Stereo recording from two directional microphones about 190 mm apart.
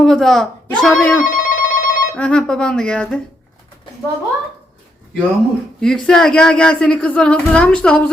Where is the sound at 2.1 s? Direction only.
5° left (ahead or behind).